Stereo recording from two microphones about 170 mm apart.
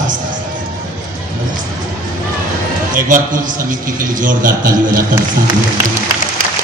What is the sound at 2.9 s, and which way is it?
A man's voice, 55° right (ahead or behind).